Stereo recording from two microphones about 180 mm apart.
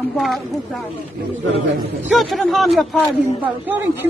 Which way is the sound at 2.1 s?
Centre (ahead or behind).